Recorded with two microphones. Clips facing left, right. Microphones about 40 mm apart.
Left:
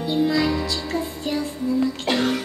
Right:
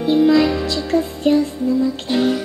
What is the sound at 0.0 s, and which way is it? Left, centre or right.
Music, right.